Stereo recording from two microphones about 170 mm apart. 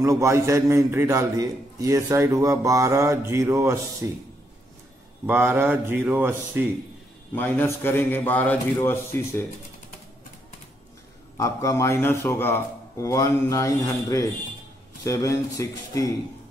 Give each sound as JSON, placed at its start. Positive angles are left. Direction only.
{"t": 0.0, "sound": "a man's voice", "side_deg": -15}
{"t": 5.2, "sound": "a man's voice", "side_deg": -10}
{"t": 7.3, "sound": "a man's voice", "side_deg": 10}
{"t": 11.3, "sound": "a man's voice", "side_deg": 20}